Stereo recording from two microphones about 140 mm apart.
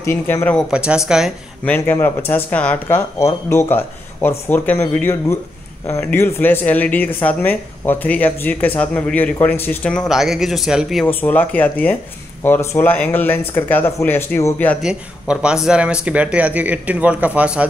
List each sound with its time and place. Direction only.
0.0 s speech: 15° left (ahead or behind)
0.6 s speech: 5° right (ahead or behind)
1.6 s speech: 15° left (ahead or behind); by 11.1 s 5° right (ahead or behind)
11.1 s speech: 15° left (ahead or behind)
14.8 s speech: 5° right (ahead or behind)